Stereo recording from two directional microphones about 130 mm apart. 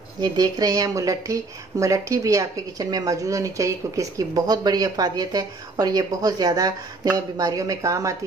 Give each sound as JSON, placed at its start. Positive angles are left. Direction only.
{"t": 0.2, "sound": "speech", "side_deg": -30}